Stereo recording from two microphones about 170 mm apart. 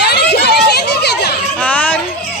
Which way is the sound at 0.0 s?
75° left (ahead or behind).